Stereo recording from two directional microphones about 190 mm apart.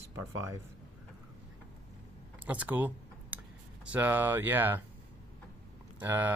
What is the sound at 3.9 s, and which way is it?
Speech, 10° right (ahead or behind).